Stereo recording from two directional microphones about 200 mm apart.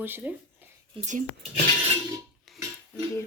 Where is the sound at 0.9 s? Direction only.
35° right (ahead or behind).